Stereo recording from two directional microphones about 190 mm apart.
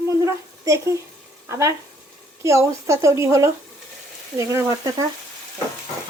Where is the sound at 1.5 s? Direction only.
15° right (ahead or behind).